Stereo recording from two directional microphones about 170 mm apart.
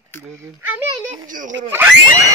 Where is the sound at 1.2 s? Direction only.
50° right (ahead or behind).